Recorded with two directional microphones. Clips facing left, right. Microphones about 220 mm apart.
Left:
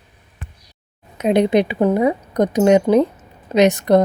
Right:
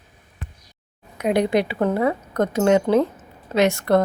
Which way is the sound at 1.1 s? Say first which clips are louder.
Left 4 dB; 20° left (ahead or behind).